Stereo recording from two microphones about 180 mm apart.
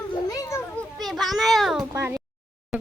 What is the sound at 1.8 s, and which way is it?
Speech, 15° right (ahead or behind).